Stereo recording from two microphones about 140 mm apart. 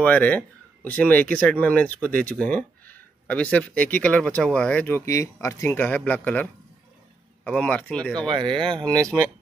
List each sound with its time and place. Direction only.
0.0 s speech: 10° left (ahead or behind)
8.3 s speech: 35° right (ahead or behind)
8.9 s speech: 20° right (ahead or behind)